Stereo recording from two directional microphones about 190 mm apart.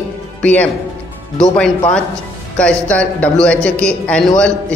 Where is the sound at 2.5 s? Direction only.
5° left (ahead or behind).